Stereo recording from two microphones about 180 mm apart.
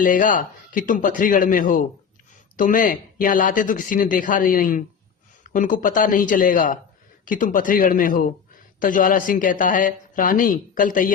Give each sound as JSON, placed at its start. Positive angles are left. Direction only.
{"t": 0.0, "sound": "a man's voice", "side_deg": 45}